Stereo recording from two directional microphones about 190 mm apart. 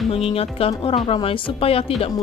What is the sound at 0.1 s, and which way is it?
A woman's voice, 30° left (ahead or behind).